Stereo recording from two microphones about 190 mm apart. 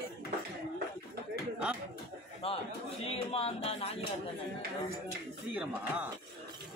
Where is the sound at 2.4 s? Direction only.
30° left (ahead or behind).